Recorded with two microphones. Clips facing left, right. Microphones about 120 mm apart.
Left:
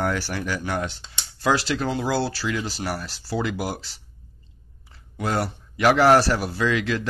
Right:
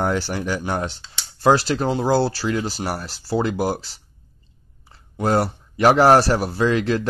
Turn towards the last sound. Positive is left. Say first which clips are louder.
# right 4 dB
turn(degrees=-35)  # may be behind; listen again after turning